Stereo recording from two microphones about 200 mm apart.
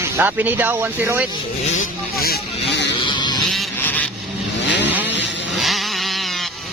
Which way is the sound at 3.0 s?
20° left (ahead or behind).